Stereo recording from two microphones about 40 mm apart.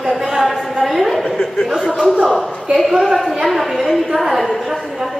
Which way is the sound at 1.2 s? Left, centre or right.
Centre.